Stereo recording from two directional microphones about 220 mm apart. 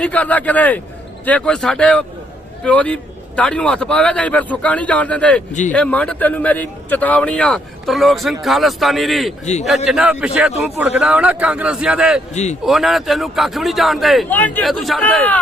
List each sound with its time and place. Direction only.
0.0 s a man's voice: 5° left (ahead or behind)
12.3 s a man's voice: 30° left (ahead or behind)
12.6 s a man's voice: centre (ahead or behind)